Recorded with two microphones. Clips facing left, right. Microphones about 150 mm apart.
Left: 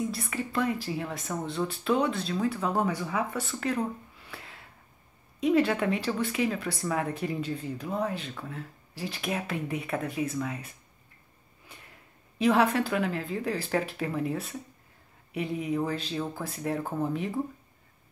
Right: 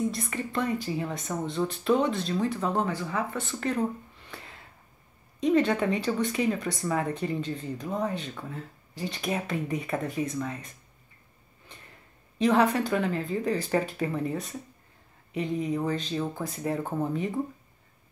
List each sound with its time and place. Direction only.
0.1 s speech: centre (ahead or behind)
4.3 s a sound: centre (ahead or behind)
5.4 s speech: 5° left (ahead or behind)
12.4 s speech: 5° left (ahead or behind)